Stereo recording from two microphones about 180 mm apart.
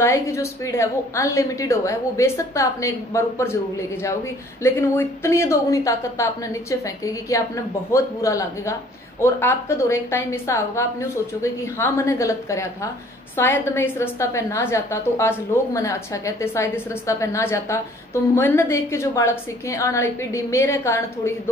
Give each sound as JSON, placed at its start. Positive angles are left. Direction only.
{"t": 0.0, "sound": "a woman's voice", "side_deg": 15}